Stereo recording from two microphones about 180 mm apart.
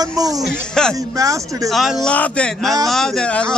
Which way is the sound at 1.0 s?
20° right (ahead or behind).